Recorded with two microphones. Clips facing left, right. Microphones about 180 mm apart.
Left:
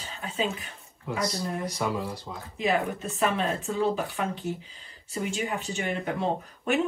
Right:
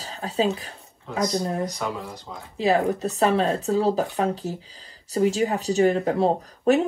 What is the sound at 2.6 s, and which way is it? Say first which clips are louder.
A woman's voice: right 6 dB; 35° right (ahead or behind).